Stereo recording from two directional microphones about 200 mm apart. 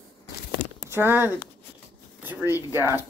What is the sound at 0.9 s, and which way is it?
Speech, 10° right (ahead or behind).